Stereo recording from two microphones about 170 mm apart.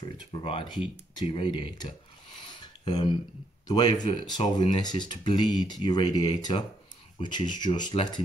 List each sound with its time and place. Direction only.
0.3 s speech: 30° left (ahead or behind)
2.6 s a sound: 25° left (ahead or behind)
3.6 s speech: 25° left (ahead or behind)